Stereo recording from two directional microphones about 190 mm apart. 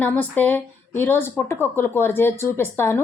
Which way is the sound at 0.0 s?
10° left (ahead or behind).